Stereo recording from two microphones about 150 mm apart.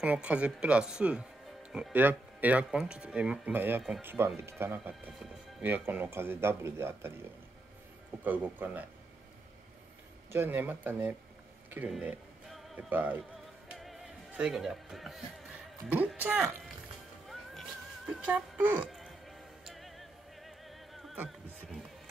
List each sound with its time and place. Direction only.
0.0 s speech: 10° right (ahead or behind)
8.2 s speech: 10° right (ahead or behind)
10.3 s speech: 15° right (ahead or behind)
11.9 s music: 5° right (ahead or behind)
12.9 s speech: 10° right (ahead or behind)
13.7 s music: 5° right (ahead or behind)
18.9 s music: centre (ahead or behind)